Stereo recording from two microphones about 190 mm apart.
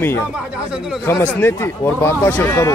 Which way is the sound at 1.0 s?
10° left (ahead or behind).